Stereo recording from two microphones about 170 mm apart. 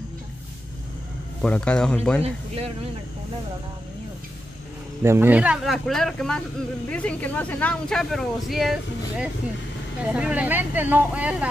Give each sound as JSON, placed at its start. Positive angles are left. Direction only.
{"t": 1.4, "sound": "speech", "side_deg": 5}
{"t": 2.2, "sound": "speech", "side_deg": -35}
{"t": 5.0, "sound": "speech", "side_deg": -15}